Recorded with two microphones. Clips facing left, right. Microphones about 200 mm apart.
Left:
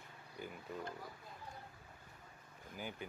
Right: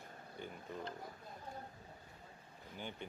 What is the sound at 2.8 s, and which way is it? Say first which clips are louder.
Speech: left 1 dB; 5° left (ahead or behind).